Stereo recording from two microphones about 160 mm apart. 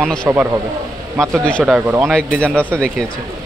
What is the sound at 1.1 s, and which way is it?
Speech, 20° right (ahead or behind).